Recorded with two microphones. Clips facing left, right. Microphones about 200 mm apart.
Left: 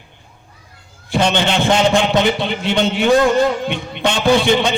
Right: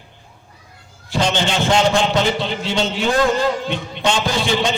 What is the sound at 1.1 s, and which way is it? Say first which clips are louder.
A man's voice: left 3 dB; 60° left (ahead or behind).